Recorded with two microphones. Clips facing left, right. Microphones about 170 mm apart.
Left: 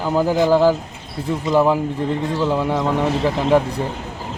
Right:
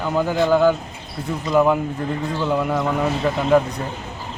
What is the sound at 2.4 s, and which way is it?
Speech, centre (ahead or behind).